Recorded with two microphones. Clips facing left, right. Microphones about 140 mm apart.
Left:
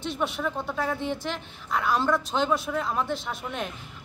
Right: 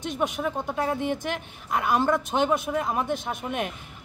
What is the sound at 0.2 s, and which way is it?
Speech, 15° right (ahead or behind).